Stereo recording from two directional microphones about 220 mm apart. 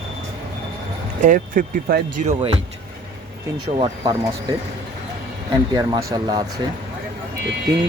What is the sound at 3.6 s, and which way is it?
Speech, 25° right (ahead or behind).